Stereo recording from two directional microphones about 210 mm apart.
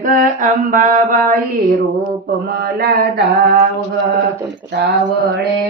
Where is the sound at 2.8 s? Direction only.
45° right (ahead or behind).